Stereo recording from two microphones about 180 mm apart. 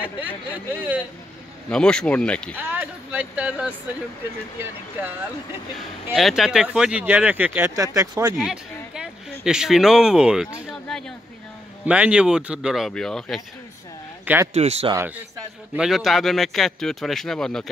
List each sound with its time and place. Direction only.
0.5 s speech: 10° right (ahead or behind)
1.7 s speech: 5° left (ahead or behind)
2.5 s speech: 10° right (ahead or behind)
6.1 s speech: centre (ahead or behind); by 8.4 s 20° right (ahead or behind)
8.5 s speech: 5° right (ahead or behind)
14.2 s a man's voice: 10° right (ahead or behind)
14.5 s speech: 35° right (ahead or behind)
15.7 s speech: centre (ahead or behind)